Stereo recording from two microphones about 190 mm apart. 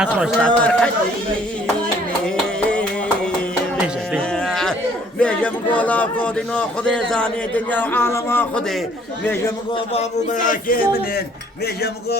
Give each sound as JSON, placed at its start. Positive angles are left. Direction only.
{"t": 0.2, "sound": "speech", "side_deg": -5}
{"t": 2.3, "sound": "music", "side_deg": 5}
{"t": 4.1, "sound": "music", "side_deg": 5}
{"t": 5.2, "sound": "speech", "side_deg": 5}
{"t": 9.7, "sound": "speech", "side_deg": 35}